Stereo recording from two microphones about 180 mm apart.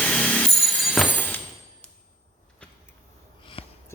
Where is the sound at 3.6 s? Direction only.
30° left (ahead or behind).